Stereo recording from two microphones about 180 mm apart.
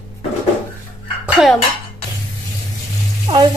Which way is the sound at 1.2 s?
Centre (ahead or behind).